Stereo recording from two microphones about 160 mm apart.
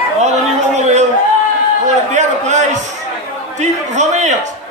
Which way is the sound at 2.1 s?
50° right (ahead or behind).